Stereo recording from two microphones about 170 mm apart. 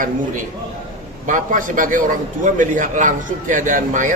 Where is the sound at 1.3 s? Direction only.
50° right (ahead or behind).